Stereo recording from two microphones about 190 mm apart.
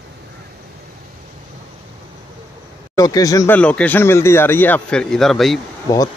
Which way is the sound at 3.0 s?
20° left (ahead or behind).